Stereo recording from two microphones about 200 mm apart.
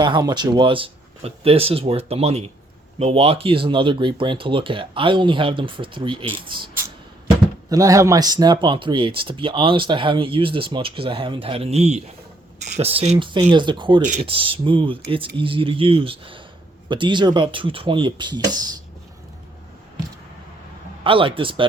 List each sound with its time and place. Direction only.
0.0 s speech: 20° right (ahead or behind)
7.7 s speech: 15° right (ahead or behind)
21.0 s speech: 25° right (ahead or behind)